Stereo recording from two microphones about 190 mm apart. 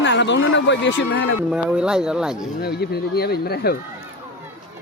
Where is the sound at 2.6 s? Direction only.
55° left (ahead or behind).